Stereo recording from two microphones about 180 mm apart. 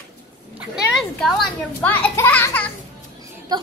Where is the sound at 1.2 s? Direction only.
5° left (ahead or behind).